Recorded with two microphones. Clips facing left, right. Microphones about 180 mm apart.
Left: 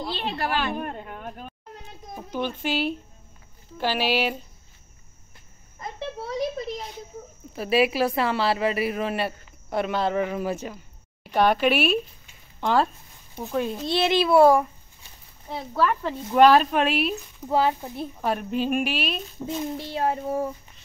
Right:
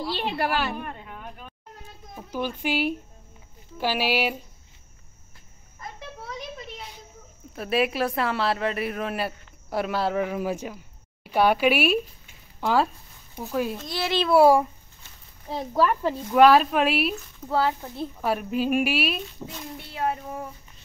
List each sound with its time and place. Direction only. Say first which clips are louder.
0.1 s speech: right 2 dB; 10° right (ahead or behind)
0.7 s speech: left 4 dB; 50° left (ahead or behind)
2.3 s speech: even; 10° right (ahead or behind)
5.8 s a sound: left 7 dB; 30° left (ahead or behind)
7.5 s a woman's voice: left 3 dB; centre (ahead or behind)
13.8 s a child's voice: left 6 dB; 25° left (ahead or behind)
14.3 s speech: even; 10° right (ahead or behind)
15.7 s a woman's voice: right 1 dB; 10° right (ahead or behind)
17.2 s speech: left 2 dB; 15° left (ahead or behind)
18.2 s a woman's voice: even; 5° right (ahead or behind)
19.5 s a child's voice: left 9 dB; 30° left (ahead or behind)